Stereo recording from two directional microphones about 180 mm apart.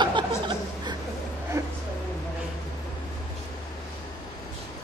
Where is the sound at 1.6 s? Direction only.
15° right (ahead or behind).